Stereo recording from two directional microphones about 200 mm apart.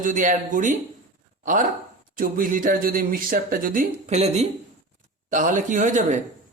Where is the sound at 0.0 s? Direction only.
40° right (ahead or behind).